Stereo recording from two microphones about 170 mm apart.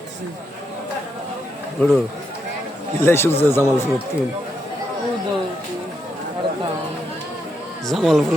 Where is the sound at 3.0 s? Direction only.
15° left (ahead or behind).